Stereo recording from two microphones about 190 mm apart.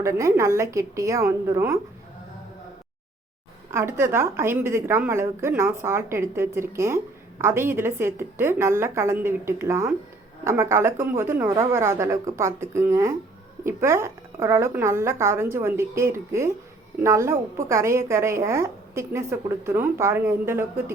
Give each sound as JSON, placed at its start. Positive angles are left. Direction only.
{"t": 0.0, "sound": "a woman's voice", "side_deg": -15}
{"t": 3.7, "sound": "a woman's voice", "side_deg": -15}